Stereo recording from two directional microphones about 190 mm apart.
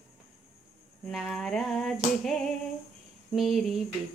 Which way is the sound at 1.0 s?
Centre (ahead or behind).